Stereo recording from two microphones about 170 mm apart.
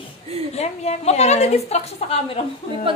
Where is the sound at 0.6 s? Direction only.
40° left (ahead or behind).